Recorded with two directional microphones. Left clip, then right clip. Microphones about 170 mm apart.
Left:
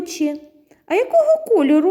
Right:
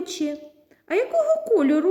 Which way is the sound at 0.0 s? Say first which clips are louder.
Left 5 dB; 30° left (ahead or behind).